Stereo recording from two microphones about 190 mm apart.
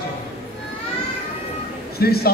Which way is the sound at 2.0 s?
55° left (ahead or behind).